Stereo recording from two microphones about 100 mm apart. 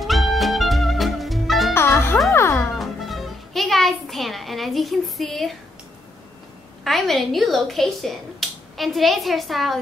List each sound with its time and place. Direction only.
0.0 s music: centre (ahead or behind)
1.7 s music: 25° left (ahead or behind)
2.7 s music: centre (ahead or behind)
6.8 s speech: centre (ahead or behind)